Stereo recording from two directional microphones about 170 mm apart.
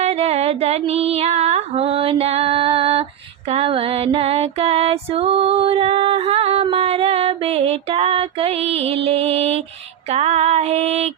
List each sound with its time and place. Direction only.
0.0 s female singing: 40° right (ahead or behind)
3.5 s music: 35° right (ahead or behind)
10.1 s female singing: 40° right (ahead or behind)